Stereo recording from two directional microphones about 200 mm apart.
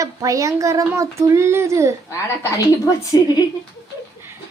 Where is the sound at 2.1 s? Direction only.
15° left (ahead or behind).